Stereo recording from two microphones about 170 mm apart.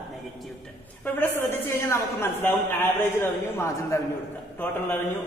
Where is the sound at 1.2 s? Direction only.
15° left (ahead or behind).